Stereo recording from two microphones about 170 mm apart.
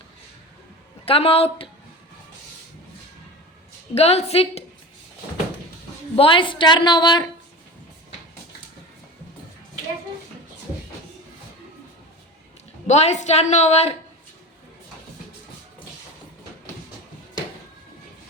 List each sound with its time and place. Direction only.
1.0 s a woman's voice: 35° left (ahead or behind)
3.9 s a woman's voice: 35° left (ahead or behind)
6.1 s a woman's voice: 30° left (ahead or behind)
12.9 s a woman's voice: 40° left (ahead or behind)